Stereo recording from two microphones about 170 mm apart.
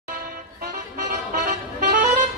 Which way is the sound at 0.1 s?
55° right (ahead or behind).